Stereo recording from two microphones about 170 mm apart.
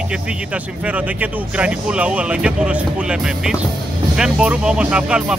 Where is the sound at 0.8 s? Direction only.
10° right (ahead or behind).